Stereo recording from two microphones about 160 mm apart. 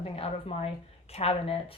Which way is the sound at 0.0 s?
35° left (ahead or behind).